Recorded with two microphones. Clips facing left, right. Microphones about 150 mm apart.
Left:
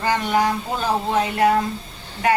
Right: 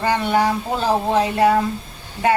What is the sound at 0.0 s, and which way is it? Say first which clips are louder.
A woman's voice: right 2 dB; 30° right (ahead or behind).